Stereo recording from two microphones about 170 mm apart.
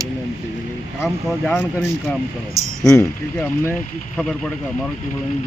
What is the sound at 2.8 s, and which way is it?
Speech, 20° left (ahead or behind).